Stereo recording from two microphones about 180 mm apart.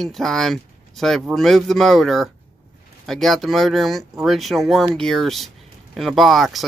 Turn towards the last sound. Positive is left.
turn(degrees=0)  # may be behind; listen again after turning